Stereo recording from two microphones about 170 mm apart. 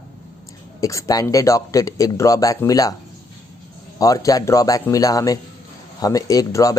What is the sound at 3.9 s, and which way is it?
Speech, 20° left (ahead or behind).